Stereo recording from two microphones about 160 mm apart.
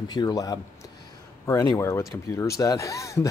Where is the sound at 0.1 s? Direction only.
25° left (ahead or behind).